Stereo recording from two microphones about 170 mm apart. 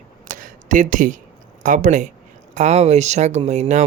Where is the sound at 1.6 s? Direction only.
50° right (ahead or behind).